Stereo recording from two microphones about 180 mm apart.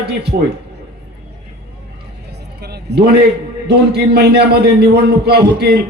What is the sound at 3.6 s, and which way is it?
A man's voice, 65° right (ahead or behind).